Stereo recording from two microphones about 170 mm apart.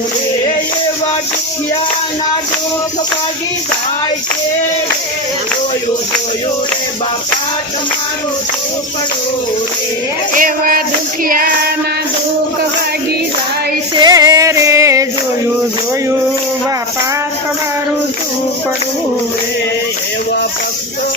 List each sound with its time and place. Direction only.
10.3 s music: 55° right (ahead or behind)
13.9 s music: 25° right (ahead or behind)